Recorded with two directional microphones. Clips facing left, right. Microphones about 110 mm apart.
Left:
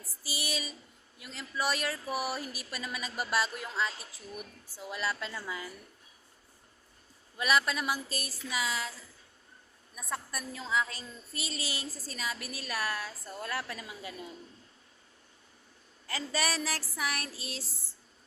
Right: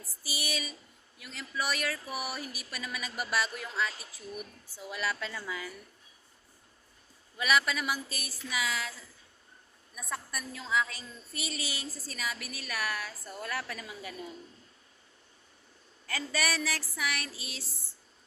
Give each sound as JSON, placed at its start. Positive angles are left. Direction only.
{"t": 0.3, "sound": "a sound", "side_deg": 30}
{"t": 1.2, "sound": "a woman's voice", "side_deg": 35}
{"t": 2.4, "sound": "speech", "side_deg": -15}
{"t": 2.7, "sound": "a woman's voice", "side_deg": 30}
{"t": 7.4, "sound": "a woman's voice", "side_deg": 35}
{"t": 9.9, "sound": "a woman's voice", "side_deg": 35}
{"t": 16.0, "sound": "a woman's voice", "side_deg": 30}